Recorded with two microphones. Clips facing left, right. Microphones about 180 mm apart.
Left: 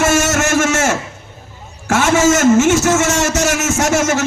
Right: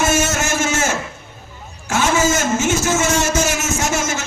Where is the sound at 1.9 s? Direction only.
80° left.